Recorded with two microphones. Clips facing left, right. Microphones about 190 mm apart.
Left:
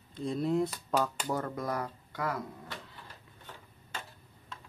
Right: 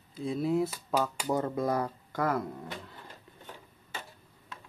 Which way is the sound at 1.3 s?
20° right (ahead or behind).